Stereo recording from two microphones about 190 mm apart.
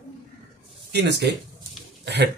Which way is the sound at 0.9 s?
65° right (ahead or behind).